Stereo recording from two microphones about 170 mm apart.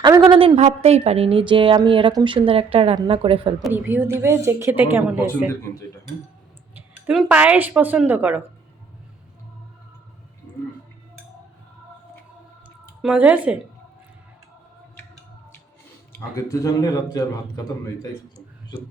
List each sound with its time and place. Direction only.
0.3 s a woman's voice: 35° right (ahead or behind)
3.7 s a woman's voice: 10° right (ahead or behind)
6.7 s a sound: 10° right (ahead or behind)
7.2 s a woman's voice: 10° right (ahead or behind)
13.0 s a woman's voice: 5° right (ahead or behind)
16.1 s speech: 20° left (ahead or behind)